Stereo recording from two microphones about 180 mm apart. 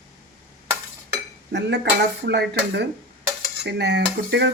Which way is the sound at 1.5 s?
75° right (ahead or behind).